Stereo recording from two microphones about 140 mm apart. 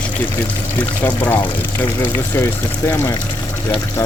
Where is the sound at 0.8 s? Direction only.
15° left (ahead or behind).